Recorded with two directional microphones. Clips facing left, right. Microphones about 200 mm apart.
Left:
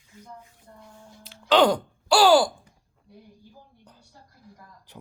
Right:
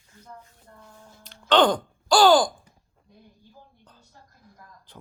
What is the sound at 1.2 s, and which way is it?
Music, 5° left (ahead or behind).